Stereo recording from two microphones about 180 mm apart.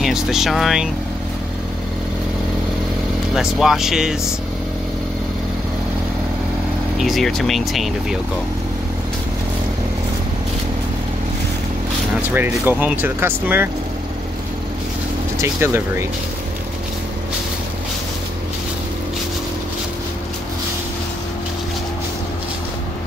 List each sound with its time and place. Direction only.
0.0 s speech: centre (ahead or behind)
3.3 s speech: centre (ahead or behind)
7.0 s speech: centre (ahead or behind)
12.4 s speech: 10° right (ahead or behind)
15.4 s speech: 15° right (ahead or behind)